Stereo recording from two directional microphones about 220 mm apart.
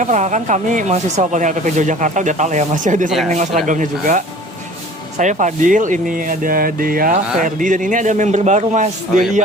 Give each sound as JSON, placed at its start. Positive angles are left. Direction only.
{"t": 0.0, "sound": "speech", "side_deg": -35}
{"t": 3.1, "sound": "speech", "side_deg": 0}
{"t": 3.3, "sound": "speech", "side_deg": -30}